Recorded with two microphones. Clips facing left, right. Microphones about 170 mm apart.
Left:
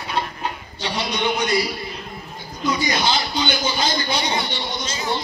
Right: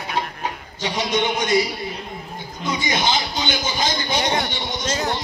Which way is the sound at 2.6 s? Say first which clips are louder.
Left 2 dB; 20° right (ahead or behind).